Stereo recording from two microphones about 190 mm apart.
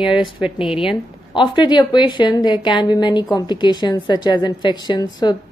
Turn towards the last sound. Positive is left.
turn(degrees=20)  # may be behind; listen again after turning